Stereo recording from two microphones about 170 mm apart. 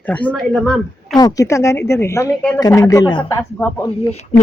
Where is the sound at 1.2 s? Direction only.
20° left (ahead or behind).